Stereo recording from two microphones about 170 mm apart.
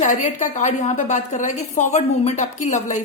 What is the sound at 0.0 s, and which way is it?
A woman's voice, 45° left (ahead or behind).